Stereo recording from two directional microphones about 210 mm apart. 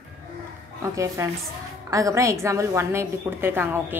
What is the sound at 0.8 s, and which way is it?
A woman's voice, 15° right (ahead or behind).